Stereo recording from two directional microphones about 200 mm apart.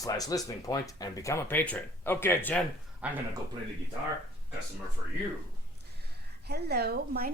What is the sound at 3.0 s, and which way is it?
Speech, 5° right (ahead or behind).